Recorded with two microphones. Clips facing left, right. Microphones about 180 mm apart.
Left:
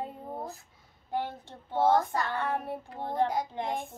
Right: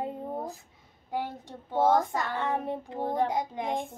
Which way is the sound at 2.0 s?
20° right (ahead or behind).